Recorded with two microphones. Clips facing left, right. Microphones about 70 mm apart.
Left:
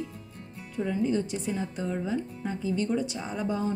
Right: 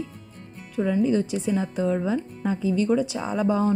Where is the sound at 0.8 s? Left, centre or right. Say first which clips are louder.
Right 5 dB; right.